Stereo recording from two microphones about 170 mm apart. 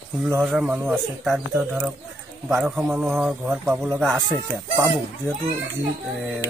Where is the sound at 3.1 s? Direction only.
10° right (ahead or behind).